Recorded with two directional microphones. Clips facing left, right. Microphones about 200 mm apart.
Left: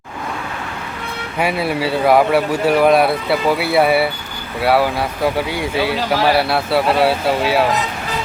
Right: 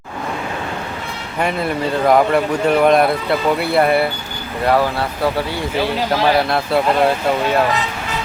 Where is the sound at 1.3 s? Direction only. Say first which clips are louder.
Left 1 dB; 5° left (ahead or behind).